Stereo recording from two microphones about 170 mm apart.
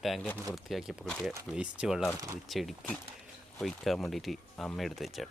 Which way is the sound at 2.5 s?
Centre (ahead or behind).